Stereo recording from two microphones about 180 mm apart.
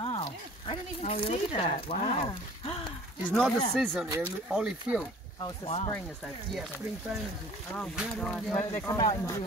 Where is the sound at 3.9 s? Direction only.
10° right (ahead or behind).